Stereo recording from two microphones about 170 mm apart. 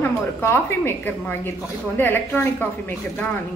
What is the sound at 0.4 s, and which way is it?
A woman's voice, 15° left (ahead or behind).